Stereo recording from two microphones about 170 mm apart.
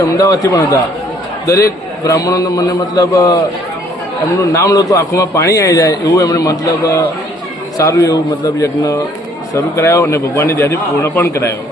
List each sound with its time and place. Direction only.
0.0 s a man's voice: 20° left (ahead or behind)